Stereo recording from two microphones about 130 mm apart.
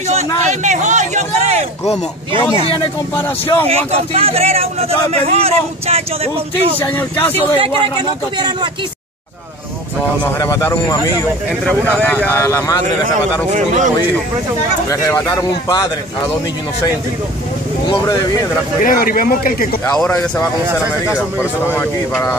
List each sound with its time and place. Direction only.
0.5 s a sound: 65° right (ahead or behind)
3.6 s a man's voice: 50° right (ahead or behind)
6.8 s speech: 15° left (ahead or behind)
7.6 s speech: 40° right (ahead or behind)
10.2 s speech: 25° left (ahead or behind)
11.6 s speech: 15° left (ahead or behind)
13.5 s speech: 70° right (ahead or behind)
14.9 s speech: 25° left (ahead or behind)
17.8 s speech: 30° left (ahead or behind)
18.9 s speech: 90° left